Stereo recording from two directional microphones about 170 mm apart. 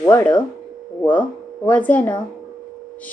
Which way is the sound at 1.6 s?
10° left (ahead or behind).